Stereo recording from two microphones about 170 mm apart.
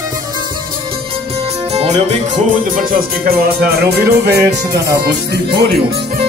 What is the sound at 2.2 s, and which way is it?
Music, 55° right (ahead or behind).